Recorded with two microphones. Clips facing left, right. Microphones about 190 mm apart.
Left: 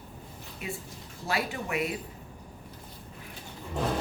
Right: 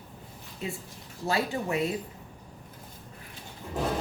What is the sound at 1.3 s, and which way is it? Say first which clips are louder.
Speech: right 3 dB; 25° right (ahead or behind).